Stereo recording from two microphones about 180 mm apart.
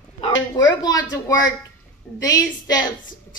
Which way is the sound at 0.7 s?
25° left (ahead or behind).